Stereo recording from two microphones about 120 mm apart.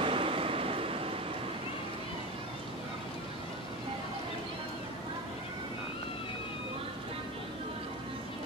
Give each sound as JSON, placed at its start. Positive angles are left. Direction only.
{"t": 0.0, "sound": "waves", "side_deg": -50}